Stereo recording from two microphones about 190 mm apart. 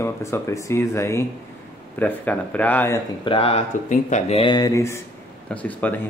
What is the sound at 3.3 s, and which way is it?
Speech, 30° left (ahead or behind).